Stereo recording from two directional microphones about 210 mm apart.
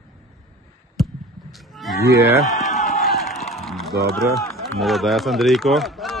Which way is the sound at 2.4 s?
Centre (ahead or behind).